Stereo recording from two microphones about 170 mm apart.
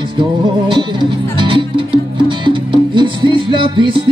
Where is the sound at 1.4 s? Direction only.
30° right (ahead or behind).